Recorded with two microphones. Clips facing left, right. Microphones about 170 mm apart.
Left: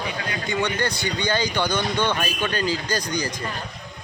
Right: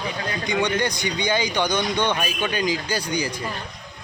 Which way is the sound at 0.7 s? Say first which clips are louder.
Right 1 dB; 15° right (ahead or behind).